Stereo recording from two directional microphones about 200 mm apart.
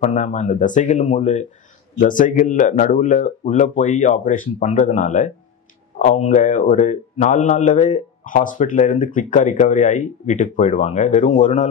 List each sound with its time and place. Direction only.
0.0 s a man's voice: 35° left (ahead or behind)